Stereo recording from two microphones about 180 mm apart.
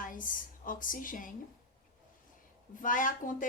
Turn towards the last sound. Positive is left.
turn(degrees=45)  # may be behind; listen again after turning